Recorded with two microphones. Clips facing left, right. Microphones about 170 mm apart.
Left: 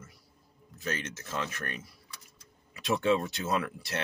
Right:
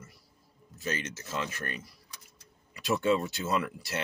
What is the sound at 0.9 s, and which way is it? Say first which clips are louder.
Speech: right 1 dB; 55° left (ahead or behind).